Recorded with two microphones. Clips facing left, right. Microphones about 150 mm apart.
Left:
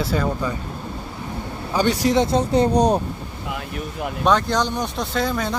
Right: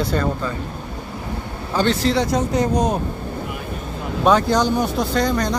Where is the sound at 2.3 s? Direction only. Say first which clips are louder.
Left 1 dB; 30° left (ahead or behind).